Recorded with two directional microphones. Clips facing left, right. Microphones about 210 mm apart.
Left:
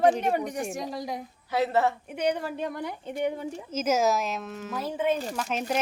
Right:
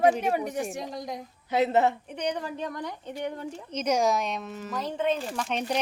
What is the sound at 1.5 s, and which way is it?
Speech, 20° right (ahead or behind).